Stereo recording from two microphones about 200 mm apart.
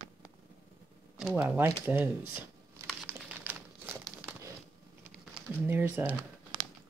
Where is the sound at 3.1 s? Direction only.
10° right (ahead or behind).